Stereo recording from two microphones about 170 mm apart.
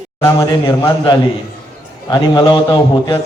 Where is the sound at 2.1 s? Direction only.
25° left (ahead or behind).